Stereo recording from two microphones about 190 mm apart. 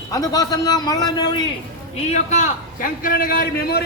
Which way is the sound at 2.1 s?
40° left (ahead or behind).